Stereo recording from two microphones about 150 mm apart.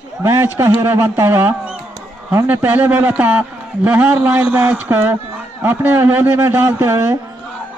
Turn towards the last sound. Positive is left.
turn(degrees=-20)  # may be behind; listen again after turning